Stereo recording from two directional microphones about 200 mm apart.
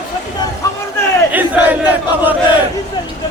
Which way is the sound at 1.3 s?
10° right (ahead or behind).